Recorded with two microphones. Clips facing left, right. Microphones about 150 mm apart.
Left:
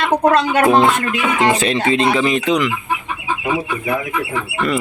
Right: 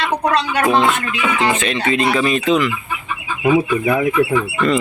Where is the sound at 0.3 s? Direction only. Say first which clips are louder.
Left 4 dB; 50° left (ahead or behind).